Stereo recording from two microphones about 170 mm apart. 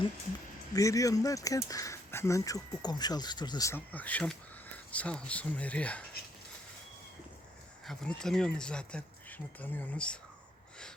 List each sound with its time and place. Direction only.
0.8 s speech: 20° left (ahead or behind)
7.9 s speech: 5° left (ahead or behind)